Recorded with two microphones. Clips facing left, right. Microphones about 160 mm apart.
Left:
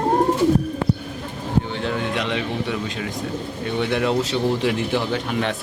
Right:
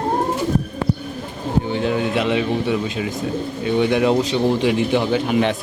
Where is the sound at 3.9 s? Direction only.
5° right (ahead or behind).